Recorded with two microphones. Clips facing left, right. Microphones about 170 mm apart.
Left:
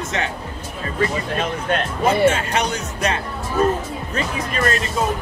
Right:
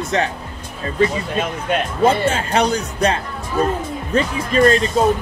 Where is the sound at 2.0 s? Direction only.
30° right (ahead or behind).